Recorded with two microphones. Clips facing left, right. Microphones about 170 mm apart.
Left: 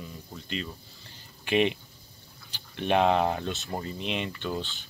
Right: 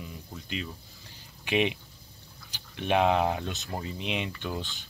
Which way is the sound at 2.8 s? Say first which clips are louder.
Left 1 dB; 10° right (ahead or behind).